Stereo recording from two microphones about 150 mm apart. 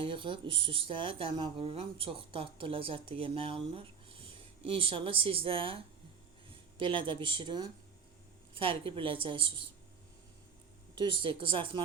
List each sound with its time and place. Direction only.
0.0 s speech: 35° right (ahead or behind)
11.2 s speech: 35° right (ahead or behind)